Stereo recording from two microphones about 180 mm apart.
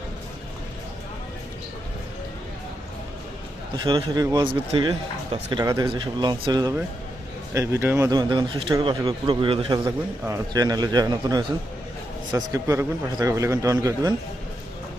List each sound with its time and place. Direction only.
3.8 s a man's voice: 25° right (ahead or behind)